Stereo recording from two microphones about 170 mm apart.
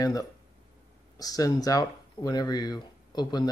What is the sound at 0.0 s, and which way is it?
Speech, 20° left (ahead or behind).